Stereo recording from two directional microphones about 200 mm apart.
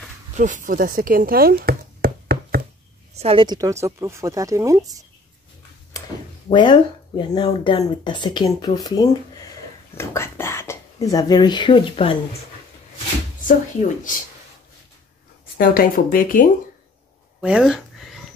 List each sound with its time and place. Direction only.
0.3 s chop: 40° right (ahead or behind)
3.2 s a woman's voice: 25° right (ahead or behind)
6.5 s speech: 25° left (ahead or behind)
13.5 s speech: 40° left (ahead or behind)
15.5 s speech: 45° left (ahead or behind)
17.4 s a sound: 5° right (ahead or behind)